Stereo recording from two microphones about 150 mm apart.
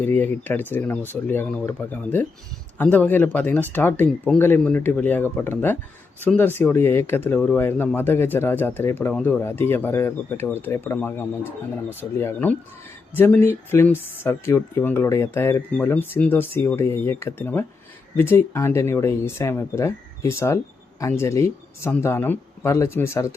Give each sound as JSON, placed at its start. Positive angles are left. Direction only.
{"t": 0.0, "sound": "speech", "side_deg": 15}